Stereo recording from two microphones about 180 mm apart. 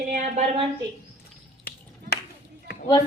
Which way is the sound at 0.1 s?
40° right (ahead or behind).